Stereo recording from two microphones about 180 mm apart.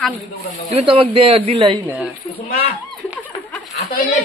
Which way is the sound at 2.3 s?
35° left (ahead or behind).